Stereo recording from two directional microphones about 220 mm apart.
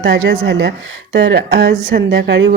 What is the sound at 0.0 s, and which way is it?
Speech, 50° right (ahead or behind).